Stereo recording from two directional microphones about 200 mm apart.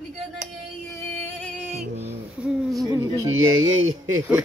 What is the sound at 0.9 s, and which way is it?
Music, 10° left (ahead or behind).